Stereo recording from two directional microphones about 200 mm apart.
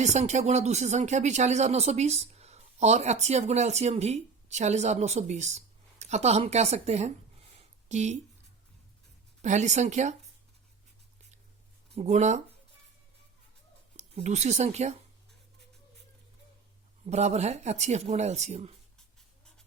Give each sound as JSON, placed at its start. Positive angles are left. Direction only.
{"t": 0.0, "sound": "speech", "side_deg": -35}
{"t": 7.5, "sound": "a sound", "side_deg": -35}
{"t": 9.4, "sound": "speech", "side_deg": -35}
{"t": 11.9, "sound": "speech", "side_deg": -35}
{"t": 13.9, "sound": "speech", "side_deg": -35}
{"t": 17.1, "sound": "speech", "side_deg": -35}